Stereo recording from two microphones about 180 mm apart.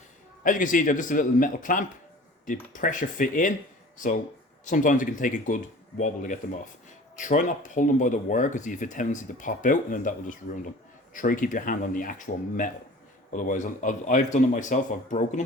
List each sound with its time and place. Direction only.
0.4 s speech: 50° left (ahead or behind)